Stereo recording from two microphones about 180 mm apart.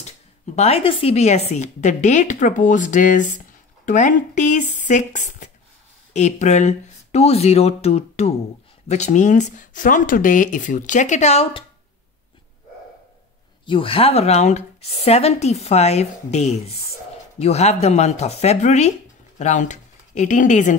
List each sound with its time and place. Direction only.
0.6 s a woman's voice: 35° left (ahead or behind)
13.7 s speech: 30° left (ahead or behind)